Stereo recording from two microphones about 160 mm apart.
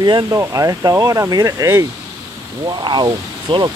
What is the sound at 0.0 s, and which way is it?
Speech, 20° right (ahead or behind).